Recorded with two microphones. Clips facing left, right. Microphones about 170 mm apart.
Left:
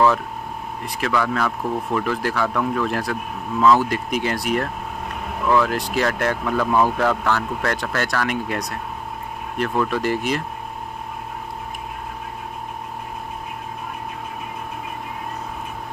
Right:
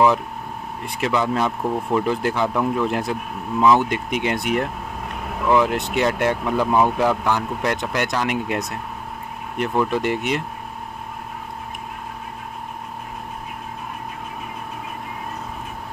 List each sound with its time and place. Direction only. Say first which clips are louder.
0.8 s speech: right 1 dB; 25° right (ahead or behind)